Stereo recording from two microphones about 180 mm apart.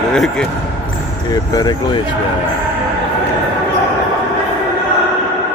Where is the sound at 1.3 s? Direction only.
20° left (ahead or behind).